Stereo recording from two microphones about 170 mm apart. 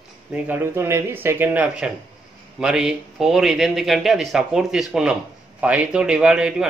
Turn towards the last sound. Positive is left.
turn(degrees=-5)  # may be behind; listen again after turning